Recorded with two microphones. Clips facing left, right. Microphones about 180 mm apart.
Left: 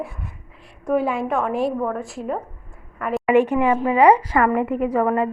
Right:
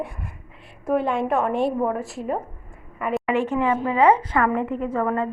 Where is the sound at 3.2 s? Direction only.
15° left (ahead or behind).